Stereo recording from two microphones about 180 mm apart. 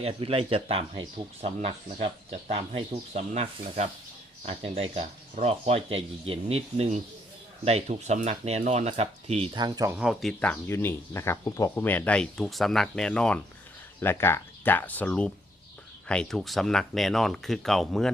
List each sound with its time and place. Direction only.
0.0 s speech: 30° right (ahead or behind)
9.9 s speech: 5° right (ahead or behind)